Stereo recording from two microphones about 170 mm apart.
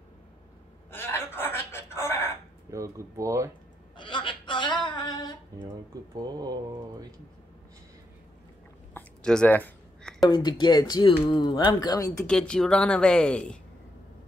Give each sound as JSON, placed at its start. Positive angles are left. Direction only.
{"t": 0.9, "sound": "wail", "side_deg": 15}
{"t": 2.7, "sound": "speech", "side_deg": -20}
{"t": 3.9, "sound": "a sound", "side_deg": 30}
{"t": 6.1, "sound": "speech", "side_deg": -25}
{"t": 8.9, "sound": "a sound", "side_deg": 5}
{"t": 10.2, "sound": "speech", "side_deg": 25}
{"t": 12.3, "sound": "speech", "side_deg": 5}